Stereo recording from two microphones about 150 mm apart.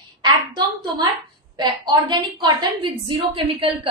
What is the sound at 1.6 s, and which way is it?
A woman's voice, 30° right (ahead or behind).